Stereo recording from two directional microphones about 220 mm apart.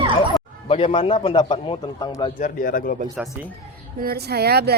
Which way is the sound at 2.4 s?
40° left (ahead or behind).